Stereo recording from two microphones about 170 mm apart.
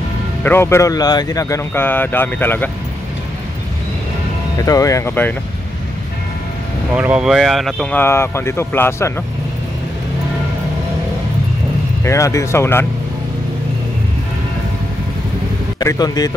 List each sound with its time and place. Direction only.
0.4 s speech: 15° left (ahead or behind)
4.6 s speech: 20° left (ahead or behind)
7.0 s speech: 5° right (ahead or behind); by 9.1 s 15° left (ahead or behind)
12.0 s speech: 15° left (ahead or behind)
15.8 s speech: 20° left (ahead or behind)